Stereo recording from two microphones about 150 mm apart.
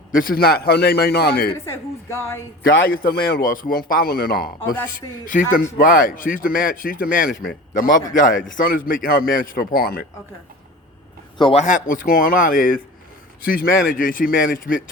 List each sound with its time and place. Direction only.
0.1 s a man's voice: 70° left (ahead or behind); by 1.5 s 90° left
1.5 s a woman's voice: 20° left (ahead or behind)
3.0 s a man's voice: 90° left
4.9 s a man's voice: 65° left (ahead or behind); by 10.1 s 90° left
11.5 s a man's voice: 55° left (ahead or behind)